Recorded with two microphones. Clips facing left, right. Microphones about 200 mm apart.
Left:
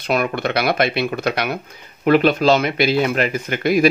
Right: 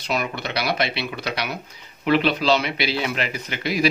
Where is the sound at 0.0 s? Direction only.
55° left (ahead or behind).